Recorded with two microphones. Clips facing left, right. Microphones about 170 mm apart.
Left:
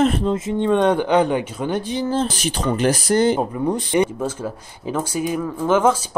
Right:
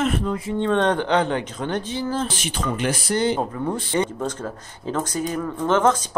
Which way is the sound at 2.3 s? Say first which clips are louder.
Left 4 dB; 40° left (ahead or behind).